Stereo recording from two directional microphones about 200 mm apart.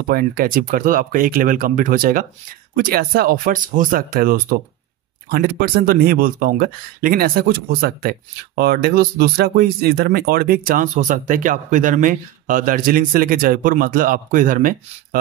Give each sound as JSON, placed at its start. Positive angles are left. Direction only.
{"t": 0.1, "sound": "speech", "side_deg": -50}